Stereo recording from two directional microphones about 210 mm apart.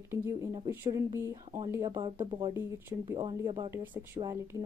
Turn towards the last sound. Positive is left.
turn(degrees=-15)  # may be behind; listen again after turning